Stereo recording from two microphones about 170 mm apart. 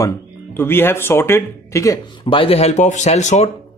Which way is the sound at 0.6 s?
15° left (ahead or behind).